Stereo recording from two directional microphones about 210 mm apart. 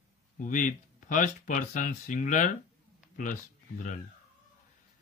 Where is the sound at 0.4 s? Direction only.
40° left (ahead or behind).